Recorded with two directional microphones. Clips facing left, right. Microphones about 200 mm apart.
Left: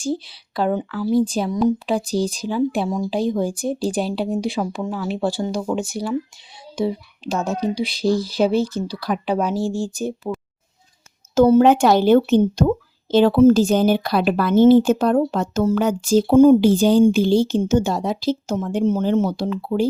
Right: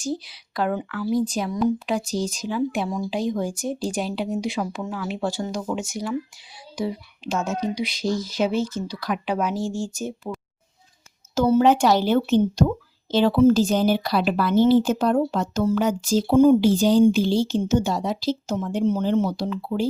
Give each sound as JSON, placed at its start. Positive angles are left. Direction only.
{"t": 0.0, "sound": "a woman's voice", "side_deg": 30}
{"t": 11.3, "sound": "speech", "side_deg": 50}